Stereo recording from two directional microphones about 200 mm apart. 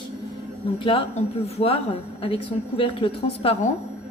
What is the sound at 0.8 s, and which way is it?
A woman's voice, 25° left (ahead or behind).